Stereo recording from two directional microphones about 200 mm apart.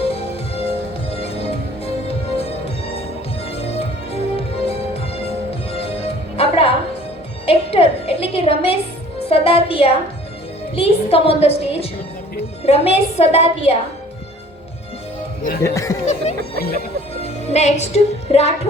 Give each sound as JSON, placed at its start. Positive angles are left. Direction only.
{"t": 0.0, "sound": "music", "side_deg": 30}
{"t": 10.8, "sound": "a woman's voice", "side_deg": 30}
{"t": 15.4, "sound": "speech", "side_deg": 55}
{"t": 15.7, "sound": "a sound", "side_deg": 15}
{"t": 16.6, "sound": "music", "side_deg": 50}
{"t": 17.2, "sound": "music", "side_deg": 30}